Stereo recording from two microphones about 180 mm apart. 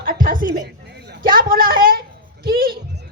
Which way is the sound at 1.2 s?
50° right (ahead or behind).